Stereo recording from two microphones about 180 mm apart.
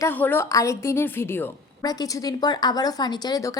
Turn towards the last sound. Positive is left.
turn(degrees=20)  # may be behind; listen again after turning